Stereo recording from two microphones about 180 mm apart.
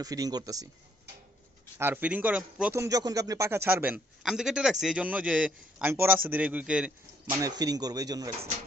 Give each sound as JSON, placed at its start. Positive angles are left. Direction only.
{"t": 0.0, "sound": "speech", "side_deg": -20}
{"t": 1.8, "sound": "a man's voice", "side_deg": -10}
{"t": 7.2, "sound": "speech", "side_deg": -20}